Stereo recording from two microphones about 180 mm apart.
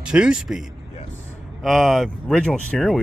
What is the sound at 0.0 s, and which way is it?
Speech, 5° right (ahead or behind).